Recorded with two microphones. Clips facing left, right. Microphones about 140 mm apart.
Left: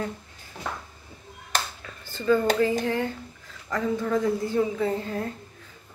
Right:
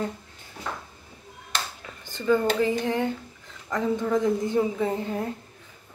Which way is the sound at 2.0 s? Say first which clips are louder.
Left 1 dB; 15° right (ahead or behind).